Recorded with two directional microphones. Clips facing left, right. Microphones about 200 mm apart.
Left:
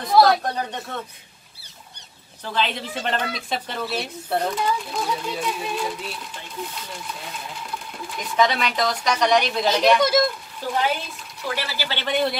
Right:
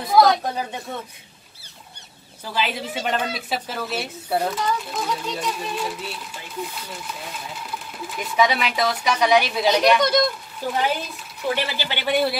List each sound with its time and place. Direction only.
0.0 s a sound: centre (ahead or behind)
2.4 s speech: 5° right (ahead or behind)
8.2 s speech: 5° right (ahead or behind)
10.6 s speech: 15° right (ahead or behind)